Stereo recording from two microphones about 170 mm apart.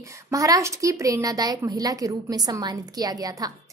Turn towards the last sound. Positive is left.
turn(degrees=-20)  # may be behind; listen again after turning